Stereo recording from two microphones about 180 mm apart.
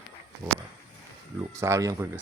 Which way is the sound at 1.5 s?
15° right (ahead or behind).